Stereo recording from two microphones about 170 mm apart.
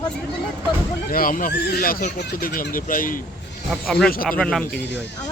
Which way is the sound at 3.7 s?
Centre (ahead or behind).